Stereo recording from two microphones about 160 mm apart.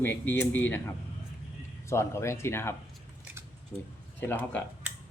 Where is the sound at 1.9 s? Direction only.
15° left (ahead or behind).